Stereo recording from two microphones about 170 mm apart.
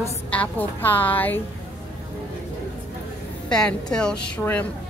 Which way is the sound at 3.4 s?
5° left (ahead or behind).